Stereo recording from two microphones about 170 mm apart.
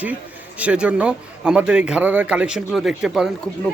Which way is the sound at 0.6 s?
5° right (ahead or behind).